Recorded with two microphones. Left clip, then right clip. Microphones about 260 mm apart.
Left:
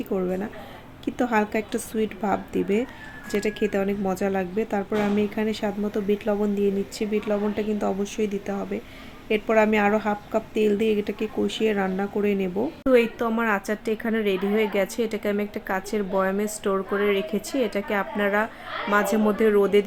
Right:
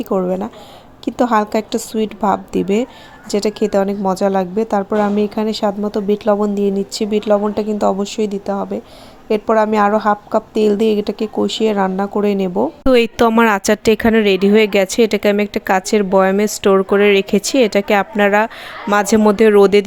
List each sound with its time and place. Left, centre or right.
0.0 s a woman's voice: right
12.9 s speech: right